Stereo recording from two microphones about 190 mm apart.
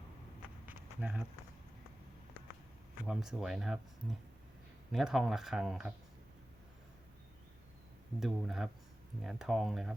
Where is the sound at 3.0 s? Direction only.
Centre (ahead or behind).